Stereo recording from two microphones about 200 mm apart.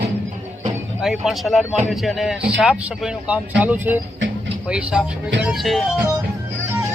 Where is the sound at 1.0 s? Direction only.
Centre (ahead or behind).